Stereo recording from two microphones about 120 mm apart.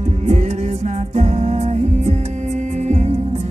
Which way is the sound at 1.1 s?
65° right (ahead or behind).